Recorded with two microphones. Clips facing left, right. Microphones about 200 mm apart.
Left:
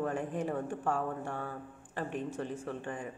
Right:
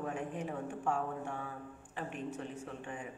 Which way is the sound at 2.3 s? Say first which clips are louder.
Left 5 dB; 90° left.